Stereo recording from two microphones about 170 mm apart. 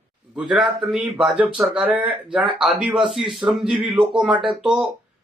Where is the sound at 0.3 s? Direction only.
5° right (ahead or behind).